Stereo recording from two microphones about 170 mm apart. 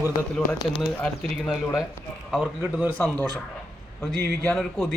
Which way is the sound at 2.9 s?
10° left (ahead or behind).